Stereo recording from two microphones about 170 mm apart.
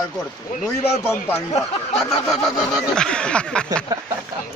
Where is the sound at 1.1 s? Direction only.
10° left (ahead or behind).